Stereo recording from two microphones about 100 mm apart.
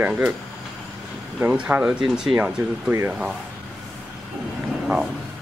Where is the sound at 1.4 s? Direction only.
15° right (ahead or behind).